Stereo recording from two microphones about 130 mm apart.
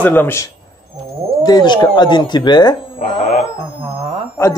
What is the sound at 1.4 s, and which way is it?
Speech, 35° left (ahead or behind).